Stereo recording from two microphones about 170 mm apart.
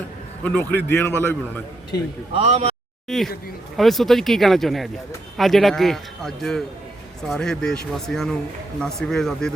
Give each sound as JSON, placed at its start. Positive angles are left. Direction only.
{"t": 0.4, "sound": "a man's voice", "side_deg": 10}
{"t": 2.3, "sound": "speech", "side_deg": -35}
{"t": 3.1, "sound": "a man's voice", "side_deg": 0}